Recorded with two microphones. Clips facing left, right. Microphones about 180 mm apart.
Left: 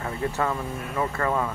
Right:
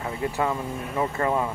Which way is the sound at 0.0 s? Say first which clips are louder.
Right 1 dB; 20° right (ahead or behind).